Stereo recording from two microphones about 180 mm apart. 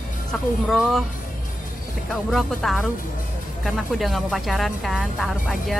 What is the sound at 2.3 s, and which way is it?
Speech, centre (ahead or behind).